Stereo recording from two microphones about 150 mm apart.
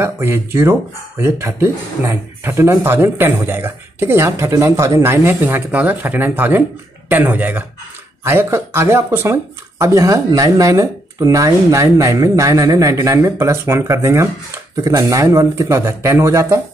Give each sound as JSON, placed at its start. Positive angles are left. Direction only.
{"t": 0.0, "sound": "speech", "side_deg": -15}